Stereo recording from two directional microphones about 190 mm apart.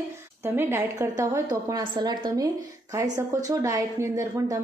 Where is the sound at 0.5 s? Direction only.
10° right (ahead or behind).